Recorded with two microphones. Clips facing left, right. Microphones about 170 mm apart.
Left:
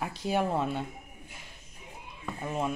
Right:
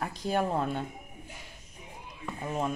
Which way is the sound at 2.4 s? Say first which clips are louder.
Even; centre (ahead or behind).